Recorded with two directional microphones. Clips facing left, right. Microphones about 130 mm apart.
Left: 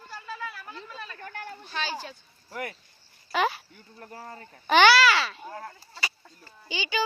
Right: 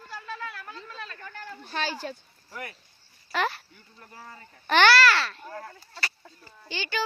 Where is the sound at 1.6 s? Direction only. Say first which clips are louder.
Right 3 dB; 50° right (ahead or behind).